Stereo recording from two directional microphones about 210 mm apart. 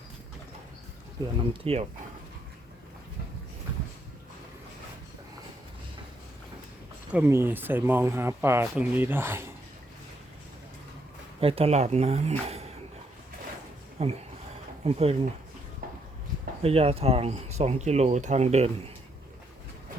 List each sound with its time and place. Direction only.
1.2 s speech: 25° right (ahead or behind)
7.1 s speech: 10° right (ahead or behind)
11.3 s speech: 25° right (ahead or behind)
14.0 s speech: 30° right (ahead or behind)
16.6 s speech: 30° right (ahead or behind)